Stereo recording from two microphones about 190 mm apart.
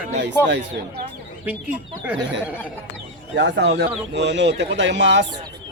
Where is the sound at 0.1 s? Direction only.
65° right (ahead or behind).